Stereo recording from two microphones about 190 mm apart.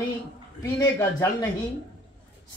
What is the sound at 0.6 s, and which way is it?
Speech, 20° left (ahead or behind).